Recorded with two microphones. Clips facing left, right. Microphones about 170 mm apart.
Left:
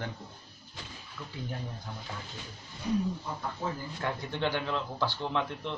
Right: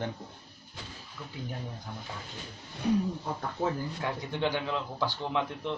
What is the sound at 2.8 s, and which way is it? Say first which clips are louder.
Speech: right 3 dB; 65° right (ahead or behind).